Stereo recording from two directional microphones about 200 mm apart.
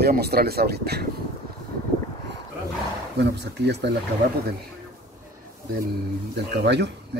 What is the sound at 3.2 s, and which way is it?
Speech, 55° right (ahead or behind).